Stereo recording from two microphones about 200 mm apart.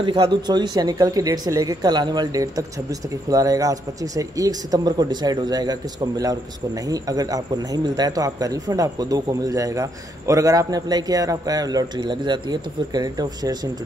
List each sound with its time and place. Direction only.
0.0 s speech: 25° right (ahead or behind)